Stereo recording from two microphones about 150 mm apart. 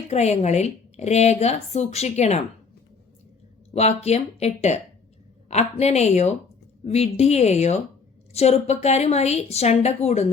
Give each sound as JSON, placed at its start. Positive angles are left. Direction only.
{"t": 0.1, "sound": "speech", "side_deg": 45}
{"t": 3.8, "sound": "speech", "side_deg": 45}